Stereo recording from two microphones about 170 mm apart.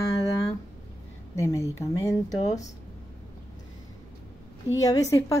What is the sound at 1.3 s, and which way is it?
A woman's voice, 15° left (ahead or behind).